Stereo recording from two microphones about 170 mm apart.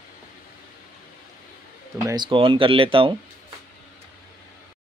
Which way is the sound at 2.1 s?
30° right (ahead or behind).